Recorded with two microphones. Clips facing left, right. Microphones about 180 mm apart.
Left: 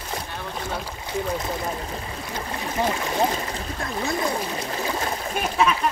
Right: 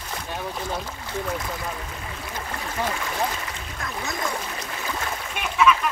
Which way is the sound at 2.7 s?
25° left (ahead or behind).